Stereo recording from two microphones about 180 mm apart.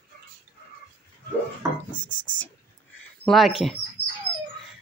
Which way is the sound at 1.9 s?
25° left (ahead or behind).